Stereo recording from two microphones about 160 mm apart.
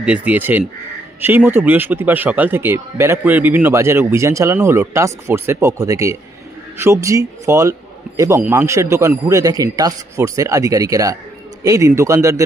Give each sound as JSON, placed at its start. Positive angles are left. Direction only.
{"t": 0.0, "sound": "a man's voice", "side_deg": -10}